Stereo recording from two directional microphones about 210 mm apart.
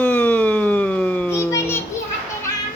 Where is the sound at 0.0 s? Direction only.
5° left (ahead or behind).